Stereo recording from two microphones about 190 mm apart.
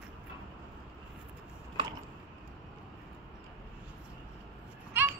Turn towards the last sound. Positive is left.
turn(degrees=-10)  # may be behind; listen again after turning